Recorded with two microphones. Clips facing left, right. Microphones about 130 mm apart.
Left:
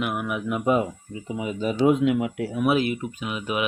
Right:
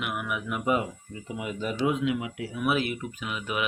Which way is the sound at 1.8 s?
50° left (ahead or behind).